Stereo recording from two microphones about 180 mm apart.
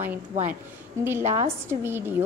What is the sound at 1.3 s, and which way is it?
Speech, 15° right (ahead or behind).